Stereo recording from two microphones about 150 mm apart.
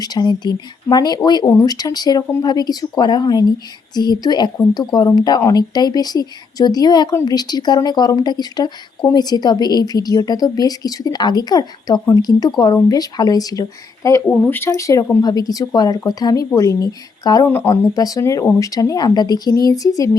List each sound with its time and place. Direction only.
0.0 s speech: 25° left (ahead or behind)